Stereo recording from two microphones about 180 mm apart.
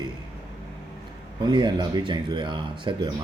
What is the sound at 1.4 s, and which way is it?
Speech, 25° right (ahead or behind).